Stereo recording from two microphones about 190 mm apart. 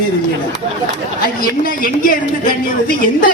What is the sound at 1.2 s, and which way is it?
A woman's voice, 50° left (ahead or behind).